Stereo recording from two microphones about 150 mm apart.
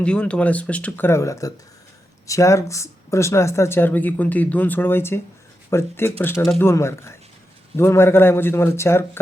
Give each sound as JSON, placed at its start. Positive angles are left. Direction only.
{"t": 0.0, "sound": "speech", "side_deg": 5}